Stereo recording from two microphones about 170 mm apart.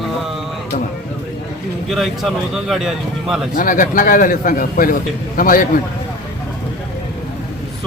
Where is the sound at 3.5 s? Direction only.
50° left (ahead or behind).